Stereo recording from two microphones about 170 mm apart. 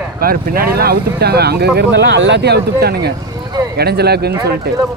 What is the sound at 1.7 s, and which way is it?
A man's voice, 90° right.